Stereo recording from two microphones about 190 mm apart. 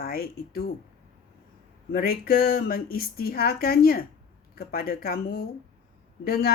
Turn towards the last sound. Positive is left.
turn(degrees=50)  # may be behind; listen again after turning